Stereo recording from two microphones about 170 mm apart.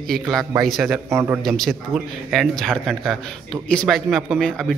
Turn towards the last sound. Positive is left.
turn(degrees=5)  # may be behind; listen again after turning